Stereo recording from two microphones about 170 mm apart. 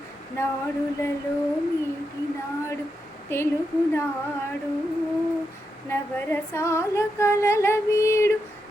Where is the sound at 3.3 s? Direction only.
15° left (ahead or behind).